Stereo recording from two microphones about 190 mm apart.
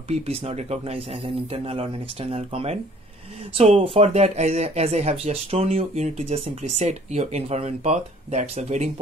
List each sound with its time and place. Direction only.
0.1 s speech: 30° right (ahead or behind)